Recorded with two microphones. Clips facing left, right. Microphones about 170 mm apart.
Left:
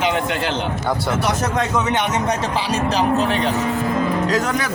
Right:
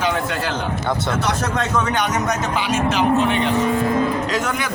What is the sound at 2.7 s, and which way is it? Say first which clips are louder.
A man's voice: right 1 dB; 35° left (ahead or behind).